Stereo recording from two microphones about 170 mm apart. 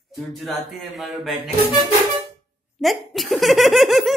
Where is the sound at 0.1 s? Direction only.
Centre (ahead or behind).